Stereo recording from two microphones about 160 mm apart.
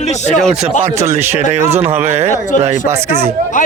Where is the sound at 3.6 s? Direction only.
55° left (ahead or behind).